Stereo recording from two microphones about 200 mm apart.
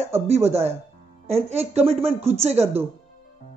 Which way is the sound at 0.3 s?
30° right (ahead or behind).